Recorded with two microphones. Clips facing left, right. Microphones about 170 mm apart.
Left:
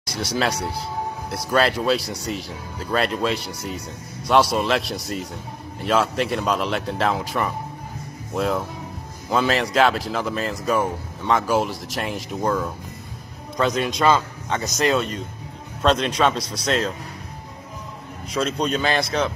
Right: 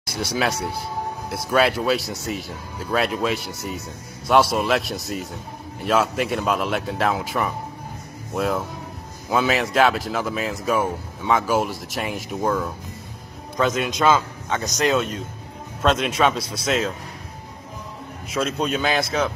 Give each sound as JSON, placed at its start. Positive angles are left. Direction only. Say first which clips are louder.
{"t": 0.4, "sound": "a man's voice", "louder": "even", "side_deg": -5}
{"t": 16.3, "sound": "speech", "louder": "even", "side_deg": -25}
{"t": 16.6, "sound": "a man's voice", "louder": "even", "side_deg": -5}
{"t": 18.3, "sound": "a man's voice", "louder": "left 1 dB", "side_deg": -5}